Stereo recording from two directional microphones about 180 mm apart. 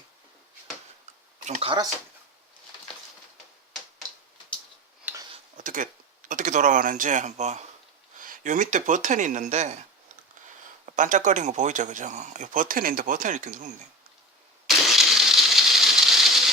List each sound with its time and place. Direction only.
1.5 s speech: 35° right (ahead or behind)
5.5 s speech: 45° right (ahead or behind)
10.8 s speech: 45° right (ahead or behind)
14.8 s a sound: centre (ahead or behind)